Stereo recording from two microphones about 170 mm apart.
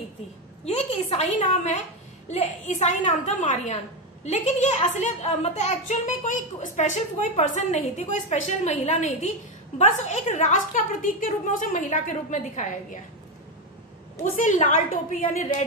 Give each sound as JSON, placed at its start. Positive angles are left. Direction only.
{"t": 0.7, "sound": "a child's voice", "side_deg": 40}
{"t": 14.3, "sound": "a woman's voice", "side_deg": 50}